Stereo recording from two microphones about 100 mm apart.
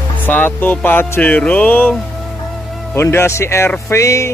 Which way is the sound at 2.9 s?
25° left (ahead or behind).